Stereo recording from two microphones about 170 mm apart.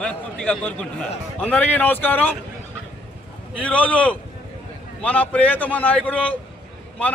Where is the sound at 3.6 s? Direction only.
10° left (ahead or behind).